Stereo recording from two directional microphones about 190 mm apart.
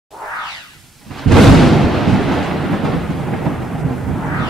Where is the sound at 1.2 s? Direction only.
Centre (ahead or behind).